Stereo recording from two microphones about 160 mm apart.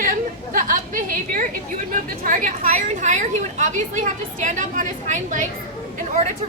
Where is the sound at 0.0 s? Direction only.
60° right (ahead or behind).